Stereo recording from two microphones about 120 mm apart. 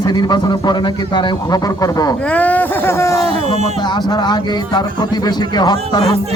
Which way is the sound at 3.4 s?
70° right (ahead or behind).